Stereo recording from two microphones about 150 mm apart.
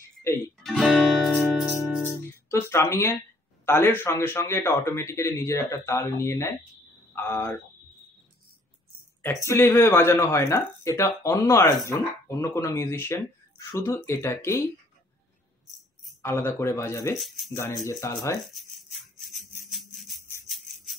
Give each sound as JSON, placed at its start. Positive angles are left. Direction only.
{"t": 0.7, "sound": "music", "side_deg": 0}
{"t": 2.5, "sound": "speech", "side_deg": 15}
{"t": 9.2, "sound": "speech", "side_deg": 20}
{"t": 16.2, "sound": "speech", "side_deg": 15}
{"t": 18.5, "sound": "music", "side_deg": 0}
{"t": 20.4, "sound": "a sound", "side_deg": 0}